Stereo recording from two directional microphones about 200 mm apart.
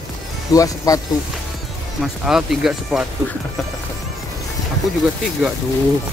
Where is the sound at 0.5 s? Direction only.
15° left (ahead or behind).